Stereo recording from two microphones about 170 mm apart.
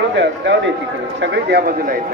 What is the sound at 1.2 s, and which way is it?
Speech, 80° right.